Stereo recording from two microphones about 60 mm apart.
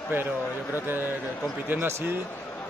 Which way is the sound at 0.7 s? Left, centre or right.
Right.